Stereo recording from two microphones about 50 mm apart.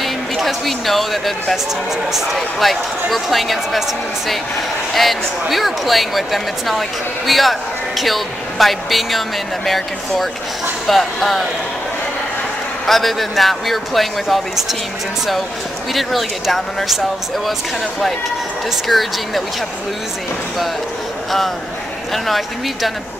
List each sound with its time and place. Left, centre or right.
0.0 s speech: centre
4.9 s speech: centre
12.8 s speech: centre
15.9 s speech: centre
18.9 s speech: centre
22.1 s speech: centre